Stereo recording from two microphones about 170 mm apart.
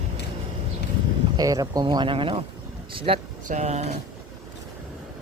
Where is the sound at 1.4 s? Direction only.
20° right (ahead or behind); by 3.9 s 40° right (ahead or behind).